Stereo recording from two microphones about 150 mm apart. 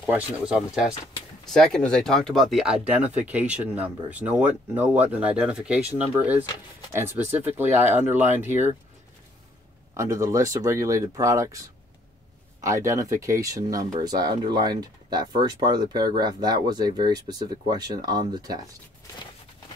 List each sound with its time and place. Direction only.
0.0 s speech: 10° right (ahead or behind)
9.9 s speech: 20° right (ahead or behind)
12.6 s speech: 20° right (ahead or behind)